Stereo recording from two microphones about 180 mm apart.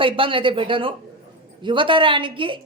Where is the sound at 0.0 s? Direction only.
30° right (ahead or behind).